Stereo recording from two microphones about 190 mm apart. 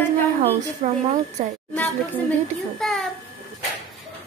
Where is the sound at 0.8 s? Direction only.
35° right (ahead or behind).